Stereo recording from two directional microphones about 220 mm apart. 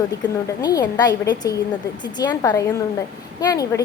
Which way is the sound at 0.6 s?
15° left (ahead or behind).